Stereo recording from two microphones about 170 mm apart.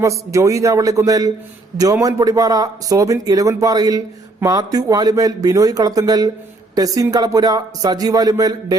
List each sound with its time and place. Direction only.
0.0 s speech: 20° right (ahead or behind)